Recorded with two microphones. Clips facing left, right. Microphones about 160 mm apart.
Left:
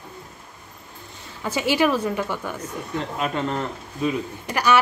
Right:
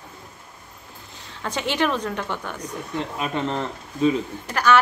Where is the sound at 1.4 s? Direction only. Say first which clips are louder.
Left 3 dB; 5° left (ahead or behind).